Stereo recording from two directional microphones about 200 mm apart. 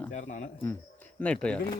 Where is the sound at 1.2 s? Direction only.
5° left (ahead or behind).